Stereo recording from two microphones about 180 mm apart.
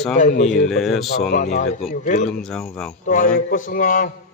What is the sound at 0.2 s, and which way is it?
Speech, 45° left (ahead or behind).